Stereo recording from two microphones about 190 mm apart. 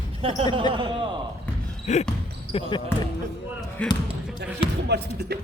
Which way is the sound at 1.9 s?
35° left (ahead or behind).